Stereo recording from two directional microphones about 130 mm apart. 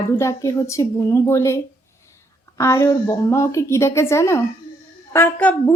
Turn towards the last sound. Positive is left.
turn(degrees=15)  # may be behind; listen again after turning